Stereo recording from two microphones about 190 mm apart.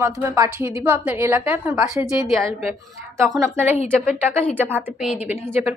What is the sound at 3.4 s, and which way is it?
A woman's voice, 15° right (ahead or behind).